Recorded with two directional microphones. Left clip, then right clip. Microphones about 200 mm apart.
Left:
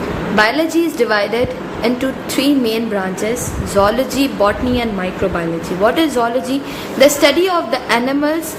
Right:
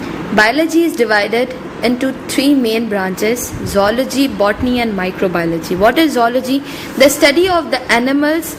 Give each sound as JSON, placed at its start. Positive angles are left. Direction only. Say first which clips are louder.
{"t": 0.3, "sound": "a woman's voice", "louder": "right 3 dB", "side_deg": -20}